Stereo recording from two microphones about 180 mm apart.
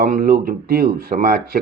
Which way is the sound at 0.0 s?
55° right (ahead or behind).